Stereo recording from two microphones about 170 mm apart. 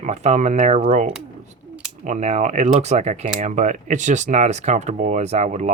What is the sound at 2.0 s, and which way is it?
Speech, 45° right (ahead or behind).